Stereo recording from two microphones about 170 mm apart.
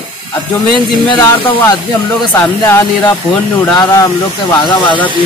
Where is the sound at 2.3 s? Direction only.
10° left (ahead or behind).